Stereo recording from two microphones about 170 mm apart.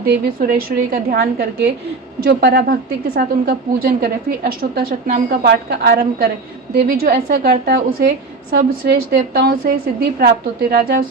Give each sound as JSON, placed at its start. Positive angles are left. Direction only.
{"t": 0.3, "sound": "a woman's voice", "side_deg": -55}
{"t": 1.1, "sound": "a woman's voice", "side_deg": -70}
{"t": 3.2, "sound": "a woman's voice", "side_deg": -60}
{"t": 6.7, "sound": "a woman's voice", "side_deg": -60}